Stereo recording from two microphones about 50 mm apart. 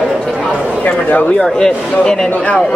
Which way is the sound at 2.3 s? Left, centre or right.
Left.